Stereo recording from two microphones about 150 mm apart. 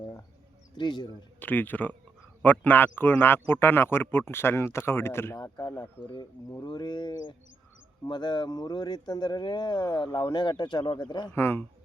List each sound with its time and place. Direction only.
0.8 s speech: 30° left (ahead or behind)
1.4 s speech: 10° left (ahead or behind)
6.5 s speech: 30° left (ahead or behind)
11.3 s speech: 15° left (ahead or behind)